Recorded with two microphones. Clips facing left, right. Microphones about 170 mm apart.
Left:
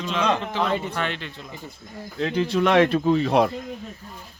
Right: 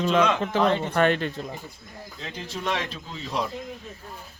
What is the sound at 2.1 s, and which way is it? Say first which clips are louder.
Speech: left 14 dB; 65° left (ahead or behind).